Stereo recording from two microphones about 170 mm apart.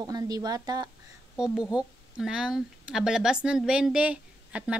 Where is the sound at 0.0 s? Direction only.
25° right (ahead or behind).